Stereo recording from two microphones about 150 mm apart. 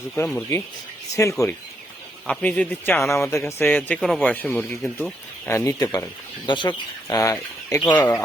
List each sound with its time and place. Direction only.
1.1 s speech: 20° left (ahead or behind)
2.2 s a man's voice: 10° left (ahead or behind)
4.9 s speech: 15° left (ahead or behind)